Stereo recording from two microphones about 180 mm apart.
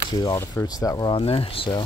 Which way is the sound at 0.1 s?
20° left (ahead or behind).